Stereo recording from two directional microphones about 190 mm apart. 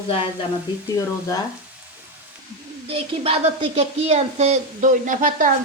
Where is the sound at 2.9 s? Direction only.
30° right (ahead or behind).